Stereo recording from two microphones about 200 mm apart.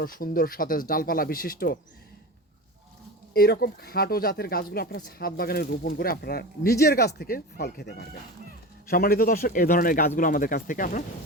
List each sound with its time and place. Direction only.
0.0 s speech: 45° left (ahead or behind)
3.3 s speech: 50° left (ahead or behind)